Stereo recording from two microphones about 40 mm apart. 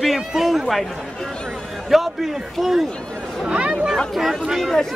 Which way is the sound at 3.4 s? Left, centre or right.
Right.